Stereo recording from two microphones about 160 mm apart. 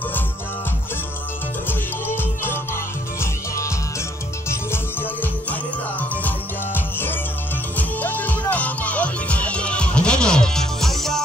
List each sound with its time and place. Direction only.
1.7 s music: 15° left (ahead or behind)